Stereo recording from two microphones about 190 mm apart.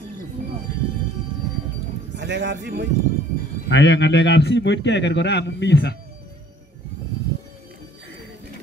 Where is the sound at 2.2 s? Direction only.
70° right (ahead or behind).